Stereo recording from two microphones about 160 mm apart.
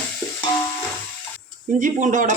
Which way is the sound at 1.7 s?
50° right (ahead or behind).